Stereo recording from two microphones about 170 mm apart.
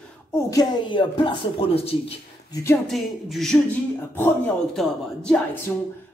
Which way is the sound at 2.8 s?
Centre (ahead or behind).